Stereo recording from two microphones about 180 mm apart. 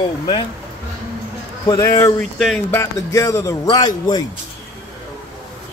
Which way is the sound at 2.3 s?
Centre (ahead or behind).